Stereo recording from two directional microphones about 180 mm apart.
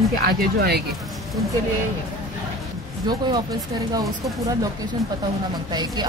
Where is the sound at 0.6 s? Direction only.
60° right (ahead or behind).